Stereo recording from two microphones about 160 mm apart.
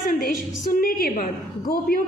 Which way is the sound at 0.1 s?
60° left (ahead or behind).